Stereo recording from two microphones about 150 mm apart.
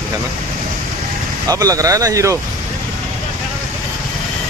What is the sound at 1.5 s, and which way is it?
Speech, 25° right (ahead or behind).